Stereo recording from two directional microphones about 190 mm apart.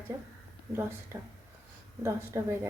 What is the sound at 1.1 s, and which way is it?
A woman's voice, 15° right (ahead or behind).